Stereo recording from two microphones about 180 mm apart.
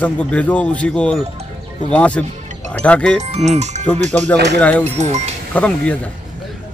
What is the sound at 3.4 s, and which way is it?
Speech, 40° right (ahead or behind).